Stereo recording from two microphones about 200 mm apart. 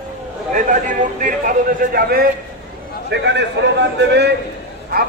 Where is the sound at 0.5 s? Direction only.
40° right (ahead or behind).